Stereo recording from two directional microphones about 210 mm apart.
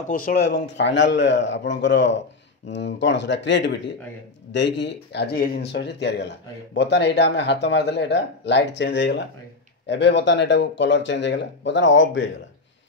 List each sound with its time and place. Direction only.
0.1 s speech: 45° left (ahead or behind); by 12.3 s 60° left (ahead or behind)